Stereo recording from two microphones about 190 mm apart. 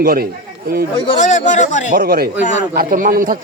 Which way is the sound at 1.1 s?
40° left (ahead or behind).